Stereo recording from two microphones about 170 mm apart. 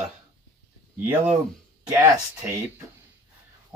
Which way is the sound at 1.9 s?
15° right (ahead or behind).